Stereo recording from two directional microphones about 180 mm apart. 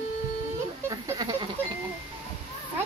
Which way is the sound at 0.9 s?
20° right (ahead or behind).